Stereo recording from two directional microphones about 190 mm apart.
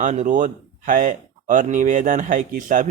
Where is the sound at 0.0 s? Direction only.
40° right (ahead or behind).